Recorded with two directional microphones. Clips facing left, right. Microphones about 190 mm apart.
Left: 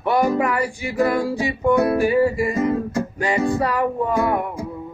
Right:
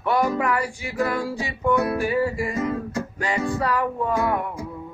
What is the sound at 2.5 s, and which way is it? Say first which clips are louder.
Music: left 5 dB; 35° left (ahead or behind).